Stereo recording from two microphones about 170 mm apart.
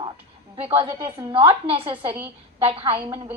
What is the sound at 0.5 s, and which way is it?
A woman's voice, 35° right (ahead or behind).